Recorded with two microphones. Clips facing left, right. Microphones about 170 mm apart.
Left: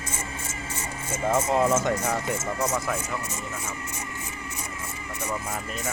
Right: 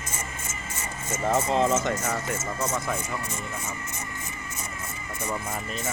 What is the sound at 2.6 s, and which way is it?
Speech, centre (ahead or behind).